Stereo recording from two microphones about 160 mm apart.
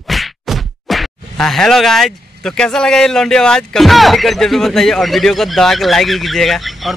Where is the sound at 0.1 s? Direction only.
Centre (ahead or behind).